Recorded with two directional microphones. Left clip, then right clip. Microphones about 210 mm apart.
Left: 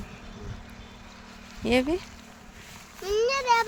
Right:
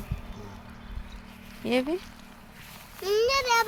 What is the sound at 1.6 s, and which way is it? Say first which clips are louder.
Speech: left 3 dB; 20° left (ahead or behind).